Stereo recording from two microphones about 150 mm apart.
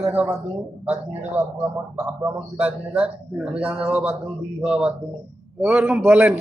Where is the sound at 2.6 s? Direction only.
10° right (ahead or behind).